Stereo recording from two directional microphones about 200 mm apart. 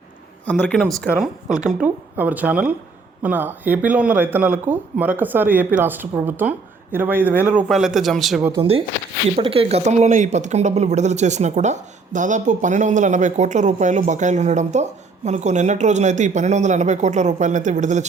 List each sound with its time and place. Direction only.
1.0 s speech: centre (ahead or behind)
9.3 s speech: 30° right (ahead or behind)